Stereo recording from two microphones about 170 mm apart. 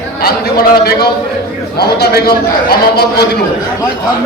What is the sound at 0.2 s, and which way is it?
A man's voice, 65° left (ahead or behind).